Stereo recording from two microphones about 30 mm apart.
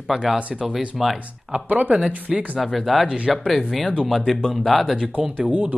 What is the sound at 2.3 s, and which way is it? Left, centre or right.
Speech, right.